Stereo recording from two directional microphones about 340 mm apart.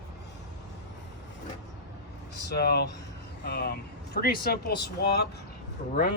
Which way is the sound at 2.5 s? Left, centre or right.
Left.